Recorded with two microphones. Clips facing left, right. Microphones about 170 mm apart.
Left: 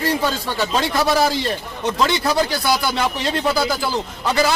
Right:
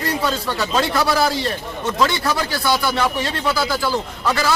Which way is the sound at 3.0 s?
20° left (ahead or behind).